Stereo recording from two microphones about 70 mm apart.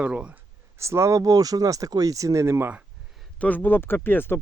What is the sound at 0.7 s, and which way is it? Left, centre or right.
Speech, right.